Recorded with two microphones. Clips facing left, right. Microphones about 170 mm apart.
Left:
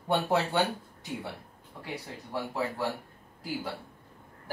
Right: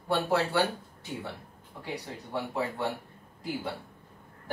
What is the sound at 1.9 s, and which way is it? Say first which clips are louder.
Speech: right 1 dB; centre (ahead or behind).